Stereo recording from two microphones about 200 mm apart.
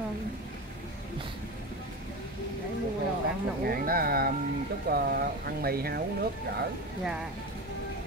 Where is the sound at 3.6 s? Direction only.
50° right (ahead or behind).